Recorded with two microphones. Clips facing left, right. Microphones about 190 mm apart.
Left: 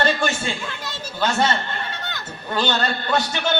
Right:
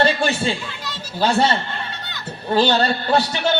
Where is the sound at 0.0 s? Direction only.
35° right (ahead or behind).